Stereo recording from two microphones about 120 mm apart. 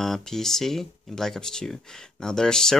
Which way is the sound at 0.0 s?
5° left (ahead or behind).